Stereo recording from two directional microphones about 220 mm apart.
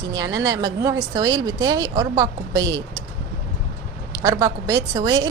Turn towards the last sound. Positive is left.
turn(degrees=-20)  # may be behind; listen again after turning